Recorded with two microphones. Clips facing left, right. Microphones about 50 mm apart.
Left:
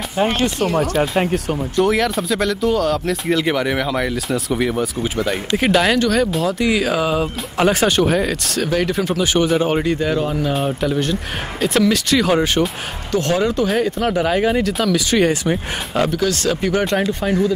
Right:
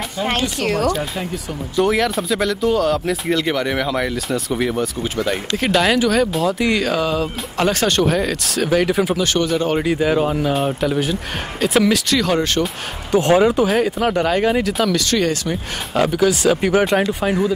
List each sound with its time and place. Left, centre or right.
1.1 s speech: left
1.8 s speech: centre
9.2 s speech: centre
9.8 s speech: centre
12.2 s speech: centre
13.1 s speech: centre
15.0 s speech: centre
15.9 s speech: centre